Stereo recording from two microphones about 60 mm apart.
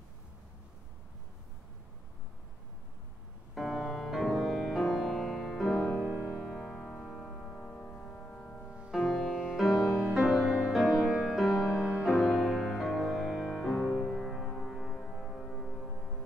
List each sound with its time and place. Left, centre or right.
3.5 s music: centre
6.5 s music: centre
8.9 s music: centre